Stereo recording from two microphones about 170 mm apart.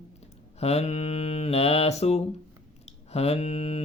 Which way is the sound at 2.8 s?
35° left (ahead or behind).